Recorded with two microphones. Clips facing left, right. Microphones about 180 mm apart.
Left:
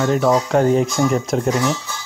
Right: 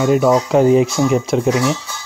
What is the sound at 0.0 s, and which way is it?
Speech, 10° right (ahead or behind).